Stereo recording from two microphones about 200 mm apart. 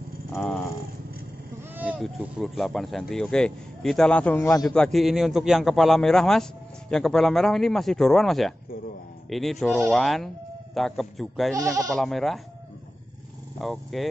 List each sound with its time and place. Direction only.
0.3 s a sound: 10° left (ahead or behind)
1.8 s speech: 5° right (ahead or behind)
11.5 s speech: 15° right (ahead or behind)
12.0 s speech: centre (ahead or behind)
13.6 s speech: centre (ahead or behind)